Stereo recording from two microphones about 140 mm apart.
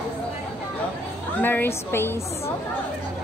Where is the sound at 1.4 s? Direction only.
15° left (ahead or behind).